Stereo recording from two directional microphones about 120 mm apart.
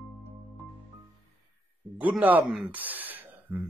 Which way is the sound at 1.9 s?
10° right (ahead or behind).